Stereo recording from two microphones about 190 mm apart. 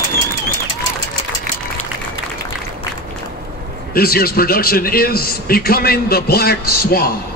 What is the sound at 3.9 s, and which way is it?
A man's voice, 50° left (ahead or behind).